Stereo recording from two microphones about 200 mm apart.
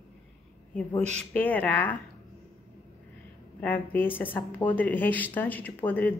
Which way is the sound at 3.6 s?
10° left (ahead or behind).